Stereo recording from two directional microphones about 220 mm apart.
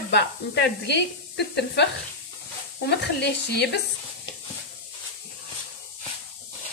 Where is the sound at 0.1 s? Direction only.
50° left (ahead or behind).